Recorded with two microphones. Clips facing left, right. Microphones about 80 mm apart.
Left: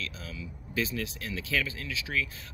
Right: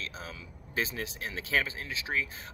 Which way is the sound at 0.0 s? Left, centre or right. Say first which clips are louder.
Left 1 dB; right.